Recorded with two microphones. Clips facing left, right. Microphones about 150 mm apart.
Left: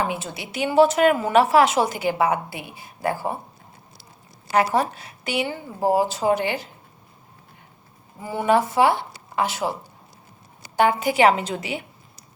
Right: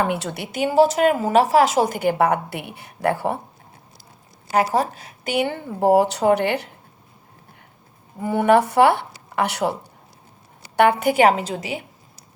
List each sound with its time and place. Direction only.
0.0 s a woman's voice: 65° right (ahead or behind)
0.6 s a woman's voice: 40° right (ahead or behind); by 3.4 s 65° right (ahead or behind)
4.5 s a woman's voice: 40° right (ahead or behind); by 6.7 s 60° right (ahead or behind)
8.2 s a woman's voice: 60° right (ahead or behind)
10.8 s a woman's voice: 60° right (ahead or behind); by 11.9 s 40° right (ahead or behind)